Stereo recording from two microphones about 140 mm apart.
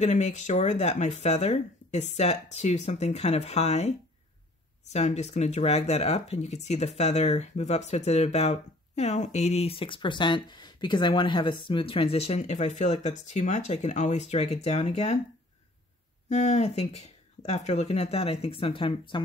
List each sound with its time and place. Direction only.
0.0 s speech: 55° left (ahead or behind)
4.9 s speech: 55° left (ahead or behind)
16.3 s speech: 55° left (ahead or behind); by 19.2 s 35° left (ahead or behind)